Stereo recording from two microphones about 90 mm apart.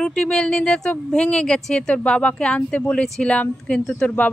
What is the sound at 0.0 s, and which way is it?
A woman's voice, 10° left (ahead or behind).